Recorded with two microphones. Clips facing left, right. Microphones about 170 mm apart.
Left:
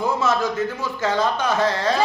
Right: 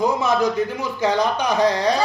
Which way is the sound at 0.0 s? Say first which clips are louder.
Right 2 dB; 15° right (ahead or behind).